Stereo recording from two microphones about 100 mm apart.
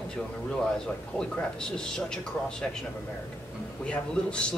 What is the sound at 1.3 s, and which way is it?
Speech, 5° left (ahead or behind).